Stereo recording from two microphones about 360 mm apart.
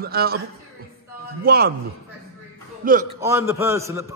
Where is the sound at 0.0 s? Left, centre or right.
Right.